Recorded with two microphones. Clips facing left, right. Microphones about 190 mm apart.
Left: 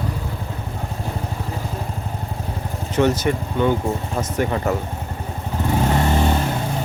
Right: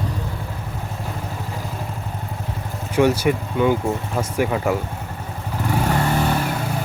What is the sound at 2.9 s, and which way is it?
Speech, 10° right (ahead or behind).